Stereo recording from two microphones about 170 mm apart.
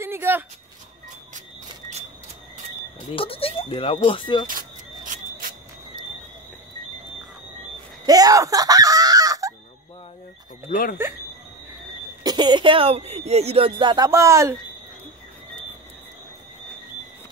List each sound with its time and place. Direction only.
0.0 s a sound: 15° right (ahead or behind)
3.2 s speech: 35° left (ahead or behind)
4.5 s a sound: 50° right (ahead or behind)
8.0 s speech: 20° right (ahead or behind)
10.7 s speech: 55° left (ahead or behind)
12.2 s speech: 25° right (ahead or behind)